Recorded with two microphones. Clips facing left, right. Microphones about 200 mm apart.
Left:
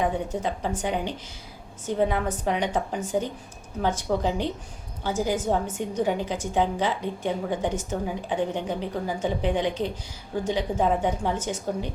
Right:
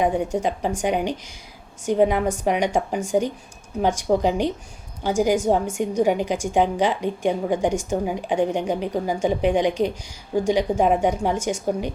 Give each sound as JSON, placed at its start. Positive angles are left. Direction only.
{"t": 0.0, "sound": "a woman's voice", "side_deg": -15}